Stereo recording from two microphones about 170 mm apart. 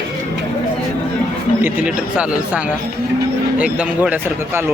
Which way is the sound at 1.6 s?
5° right (ahead or behind).